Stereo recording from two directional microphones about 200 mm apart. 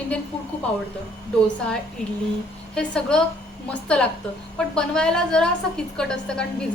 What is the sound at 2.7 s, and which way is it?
A woman's voice, 5° left (ahead or behind).